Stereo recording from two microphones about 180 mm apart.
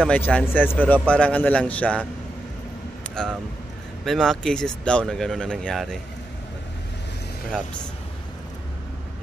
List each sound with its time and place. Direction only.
0.0 s speech: 5° left (ahead or behind)
4.0 s speech: centre (ahead or behind)